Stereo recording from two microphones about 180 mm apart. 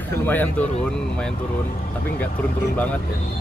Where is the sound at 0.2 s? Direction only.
10° left (ahead or behind).